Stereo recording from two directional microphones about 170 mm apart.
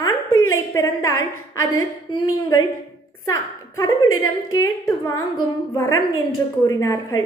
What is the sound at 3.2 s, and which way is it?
A woman's voice, 20° left (ahead or behind).